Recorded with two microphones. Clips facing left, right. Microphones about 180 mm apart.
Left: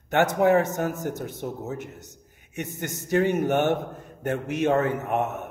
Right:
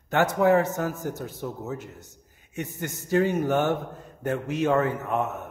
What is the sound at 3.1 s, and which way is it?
Speech, 65° left (ahead or behind).